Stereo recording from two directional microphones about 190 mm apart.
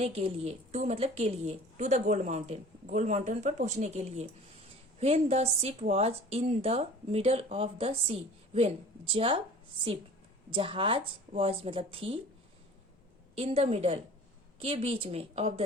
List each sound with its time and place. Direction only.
0.0 s a woman's voice: 30° right (ahead or behind)
10.5 s speech: 25° right (ahead or behind)
13.3 s a woman's voice: 35° right (ahead or behind)